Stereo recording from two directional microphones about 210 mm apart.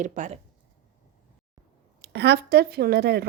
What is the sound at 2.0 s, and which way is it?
A woman's voice, 50° right (ahead or behind).